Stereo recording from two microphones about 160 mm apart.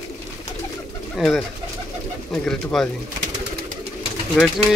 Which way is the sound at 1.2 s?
Centre (ahead or behind).